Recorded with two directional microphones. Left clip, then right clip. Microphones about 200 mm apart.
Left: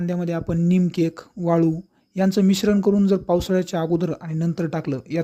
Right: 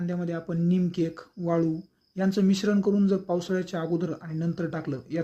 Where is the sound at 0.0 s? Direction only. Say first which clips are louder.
Left 6 dB; 40° left (ahead or behind).